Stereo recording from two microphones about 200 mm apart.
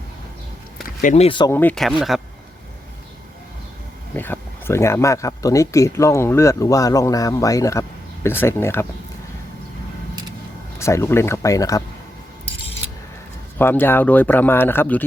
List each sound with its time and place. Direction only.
1.0 s speech: 30° left (ahead or behind)
1.5 s speech: 5° left (ahead or behind)
4.1 s speech: 10° left (ahead or behind)
10.8 s speech: 15° left (ahead or behind)
13.6 s speech: 10° left (ahead or behind)